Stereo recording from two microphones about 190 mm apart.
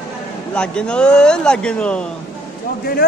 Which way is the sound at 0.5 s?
5° left (ahead or behind).